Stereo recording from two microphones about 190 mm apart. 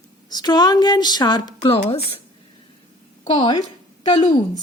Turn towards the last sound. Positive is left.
turn(degrees=30)  # may be behind; listen again after turning